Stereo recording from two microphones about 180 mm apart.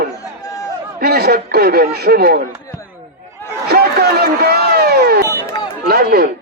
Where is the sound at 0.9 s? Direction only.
60° right (ahead or behind).